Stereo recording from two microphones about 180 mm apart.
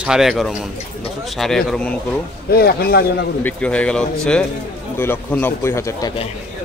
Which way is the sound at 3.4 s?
10° left (ahead or behind).